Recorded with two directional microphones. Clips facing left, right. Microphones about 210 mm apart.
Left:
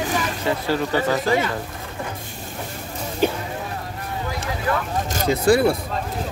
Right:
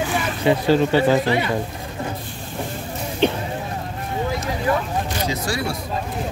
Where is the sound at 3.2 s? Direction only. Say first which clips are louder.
Right 1 dB; 5° left (ahead or behind).